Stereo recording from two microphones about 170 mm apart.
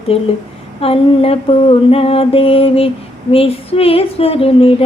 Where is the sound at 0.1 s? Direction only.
35° left (ahead or behind).